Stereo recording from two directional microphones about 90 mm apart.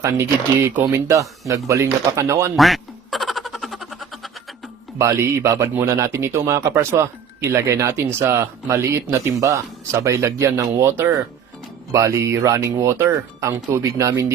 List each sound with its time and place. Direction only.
0.0 s speech: 30° right (ahead or behind)
2.6 s quack: centre (ahead or behind)
4.9 s speech: 30° right (ahead or behind)